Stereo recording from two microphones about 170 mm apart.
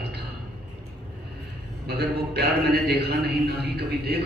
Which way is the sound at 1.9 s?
70° right (ahead or behind).